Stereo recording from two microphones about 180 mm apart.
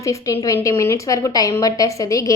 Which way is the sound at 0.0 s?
15° left (ahead or behind).